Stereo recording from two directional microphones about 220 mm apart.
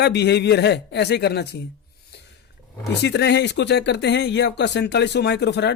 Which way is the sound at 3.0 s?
50° left (ahead or behind).